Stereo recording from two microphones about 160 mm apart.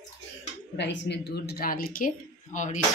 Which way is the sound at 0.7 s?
90° left.